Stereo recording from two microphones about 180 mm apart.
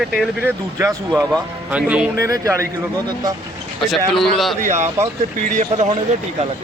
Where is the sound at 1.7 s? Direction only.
5° right (ahead or behind).